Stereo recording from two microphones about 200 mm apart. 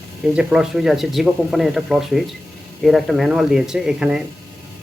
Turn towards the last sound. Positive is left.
turn(degrees=-5)  # may be behind; listen again after turning